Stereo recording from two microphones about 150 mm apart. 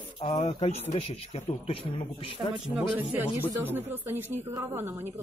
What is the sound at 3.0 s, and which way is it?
Speech, 10° right (ahead or behind).